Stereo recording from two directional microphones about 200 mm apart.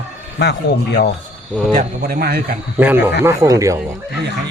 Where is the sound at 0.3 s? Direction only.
55° left (ahead or behind).